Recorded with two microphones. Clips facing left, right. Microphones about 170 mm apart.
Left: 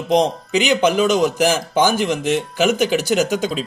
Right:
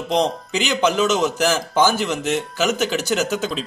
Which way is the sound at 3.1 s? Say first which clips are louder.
Left 3 dB; 50° left (ahead or behind).